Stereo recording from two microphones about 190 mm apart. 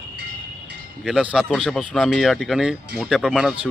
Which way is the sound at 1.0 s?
5° right (ahead or behind).